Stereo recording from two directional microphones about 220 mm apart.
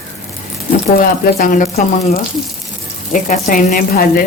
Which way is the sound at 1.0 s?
40° left (ahead or behind).